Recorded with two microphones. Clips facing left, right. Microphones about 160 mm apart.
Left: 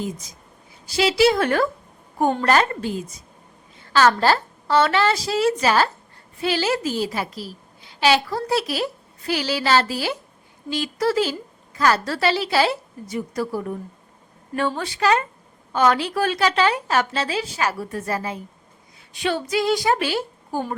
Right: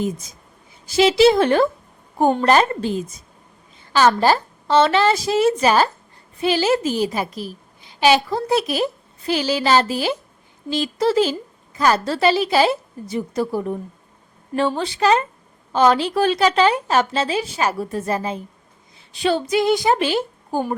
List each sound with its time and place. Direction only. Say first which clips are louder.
0.9 s a woman's voice: right 4 dB; 20° right (ahead or behind)
14.8 s a woman's voice: right 2 dB; 25° right (ahead or behind)